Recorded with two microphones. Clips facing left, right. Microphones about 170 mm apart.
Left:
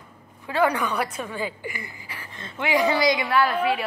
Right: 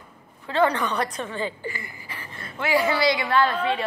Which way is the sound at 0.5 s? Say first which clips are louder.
Right 1 dB; 10° left (ahead or behind).